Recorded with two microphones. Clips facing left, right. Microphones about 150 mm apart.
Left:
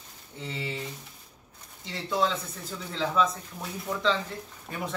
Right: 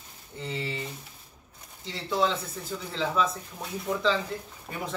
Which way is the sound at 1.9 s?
Centre (ahead or behind).